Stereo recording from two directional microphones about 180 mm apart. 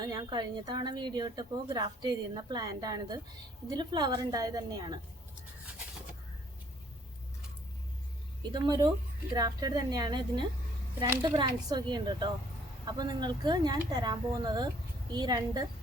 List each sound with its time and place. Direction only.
0.0 s speech: 20° right (ahead or behind)
8.5 s speech: 25° right (ahead or behind)
11.0 s a woman's voice: 15° right (ahead or behind)
11.3 s speech: 25° right (ahead or behind)